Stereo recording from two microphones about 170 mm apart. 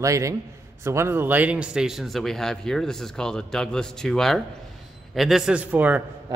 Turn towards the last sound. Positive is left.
turn(degrees=-10)  # may be behind; listen again after turning